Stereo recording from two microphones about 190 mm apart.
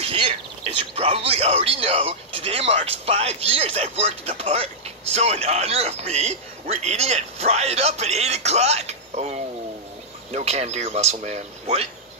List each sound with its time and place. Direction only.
0.0 s bird: 30° right (ahead or behind)
0.9 s speech: 30° right (ahead or behind)